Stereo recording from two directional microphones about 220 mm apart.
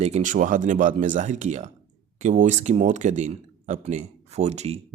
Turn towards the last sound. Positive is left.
turn(degrees=-30)  # may be behind; listen again after turning